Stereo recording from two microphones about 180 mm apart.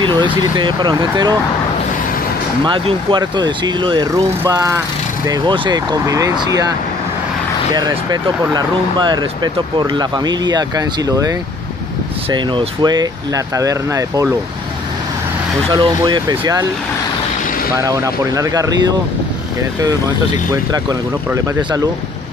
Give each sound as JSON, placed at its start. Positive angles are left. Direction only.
{"t": 0.0, "sound": "speech", "side_deg": -25}
{"t": 2.6, "sound": "speech", "side_deg": -25}
{"t": 7.7, "sound": "speech", "side_deg": -20}
{"t": 15.7, "sound": "speech", "side_deg": -25}
{"t": 17.7, "sound": "speech", "side_deg": -20}
{"t": 21.5, "sound": "speech", "side_deg": -25}